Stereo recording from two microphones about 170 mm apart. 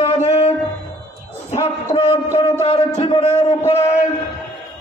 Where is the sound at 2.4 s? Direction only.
35° left (ahead or behind).